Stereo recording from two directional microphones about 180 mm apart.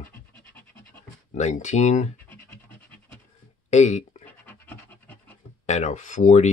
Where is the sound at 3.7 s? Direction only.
40° left (ahead or behind).